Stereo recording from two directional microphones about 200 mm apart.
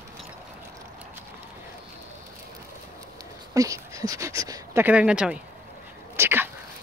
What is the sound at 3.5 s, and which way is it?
Speech, 15° right (ahead or behind).